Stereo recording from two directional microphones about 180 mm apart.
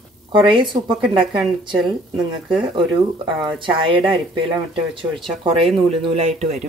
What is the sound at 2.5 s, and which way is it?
Speech, 5° right (ahead or behind).